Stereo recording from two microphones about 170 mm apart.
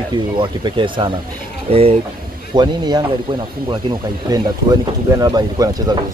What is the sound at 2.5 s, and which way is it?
Speech, 25° right (ahead or behind).